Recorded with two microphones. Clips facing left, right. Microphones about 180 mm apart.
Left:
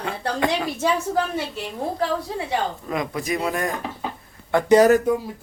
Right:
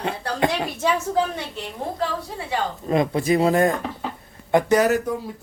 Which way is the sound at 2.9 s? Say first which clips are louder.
Right 10 dB; 30° right (ahead or behind).